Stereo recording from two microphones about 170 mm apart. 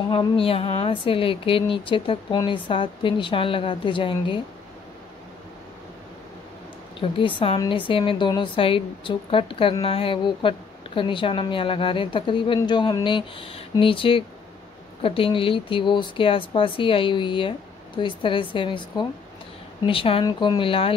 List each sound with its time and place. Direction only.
0.1 s speech: 30° left (ahead or behind)
7.0 s speech: 30° left (ahead or behind)